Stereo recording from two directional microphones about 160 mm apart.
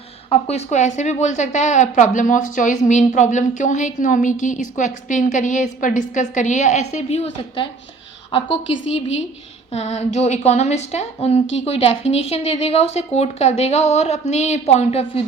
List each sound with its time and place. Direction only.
0.3 s a woman's voice: 40° left (ahead or behind)
9.7 s a woman's voice: 45° left (ahead or behind)